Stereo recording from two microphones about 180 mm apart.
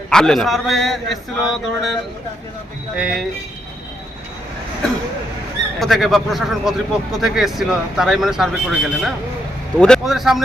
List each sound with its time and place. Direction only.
0.1 s speech: 5° left (ahead or behind)
5.8 s speech: centre (ahead or behind)